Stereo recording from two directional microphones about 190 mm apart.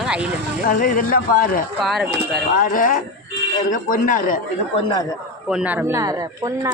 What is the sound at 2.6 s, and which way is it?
Speech, 45° left (ahead or behind).